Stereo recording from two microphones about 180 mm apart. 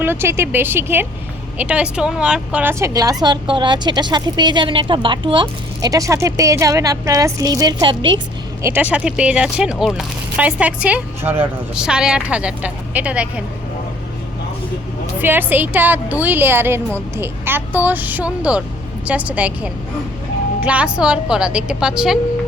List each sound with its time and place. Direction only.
0.0 s a woman's voice: 10° right (ahead or behind)
8.6 s a woman's voice: 10° right (ahead or behind)
15.2 s a woman's voice: 10° right (ahead or behind)